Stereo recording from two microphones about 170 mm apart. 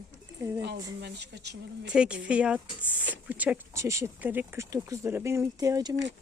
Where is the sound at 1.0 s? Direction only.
85° right.